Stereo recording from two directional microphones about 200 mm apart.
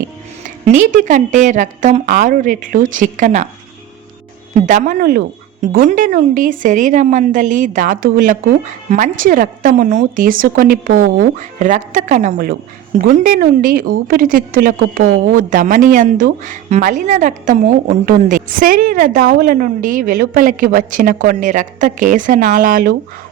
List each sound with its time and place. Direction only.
0.4 s a woman's voice: 40° right (ahead or behind)
4.6 s a woman's voice: 40° right (ahead or behind)